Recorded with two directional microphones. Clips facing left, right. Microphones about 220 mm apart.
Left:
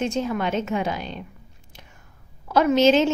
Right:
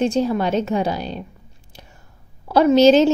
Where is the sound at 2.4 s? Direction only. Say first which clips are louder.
Right 5 dB; 35° right (ahead or behind).